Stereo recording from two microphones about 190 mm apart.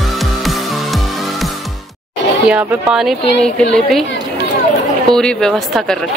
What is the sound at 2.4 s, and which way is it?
Speech, 5° right (ahead or behind).